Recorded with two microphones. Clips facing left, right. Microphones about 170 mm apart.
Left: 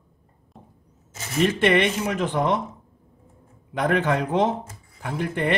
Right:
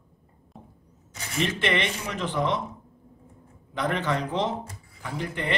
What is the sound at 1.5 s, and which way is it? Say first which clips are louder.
Speech: left 8 dB; 55° left (ahead or behind).